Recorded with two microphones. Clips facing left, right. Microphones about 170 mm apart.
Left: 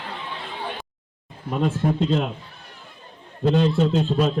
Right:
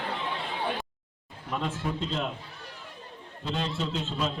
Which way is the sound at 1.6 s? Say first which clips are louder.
Left 11 dB; 50° left (ahead or behind).